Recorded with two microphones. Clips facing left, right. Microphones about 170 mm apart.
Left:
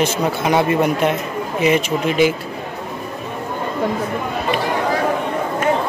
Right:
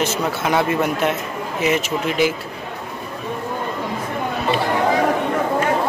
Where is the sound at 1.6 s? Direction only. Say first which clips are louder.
Left 3 dB; 5° right (ahead or behind).